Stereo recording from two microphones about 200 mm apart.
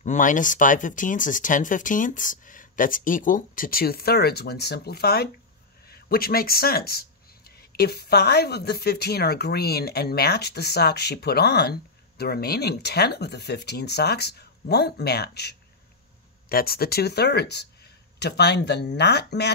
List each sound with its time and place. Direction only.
0.0 s speech: 40° left (ahead or behind); by 19.5 s 55° left (ahead or behind)